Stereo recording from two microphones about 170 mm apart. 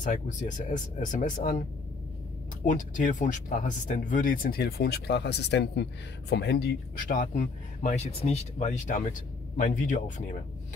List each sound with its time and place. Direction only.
0.0 s speech: 50° left (ahead or behind)
2.6 s speech: 50° left (ahead or behind)